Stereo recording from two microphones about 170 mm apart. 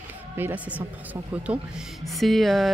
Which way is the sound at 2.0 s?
Centre (ahead or behind).